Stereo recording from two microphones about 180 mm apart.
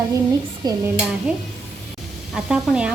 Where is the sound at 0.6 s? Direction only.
20° right (ahead or behind).